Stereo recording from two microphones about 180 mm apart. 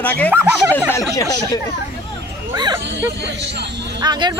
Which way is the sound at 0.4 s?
10° right (ahead or behind).